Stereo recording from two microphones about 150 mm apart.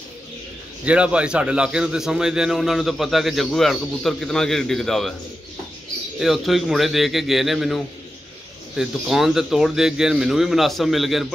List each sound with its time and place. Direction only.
0.8 s a man's voice: 10° right (ahead or behind)
6.1 s a man's voice: centre (ahead or behind)